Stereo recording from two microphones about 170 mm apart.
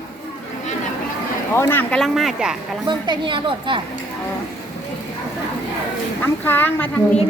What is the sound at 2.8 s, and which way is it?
Speech, 25° right (ahead or behind).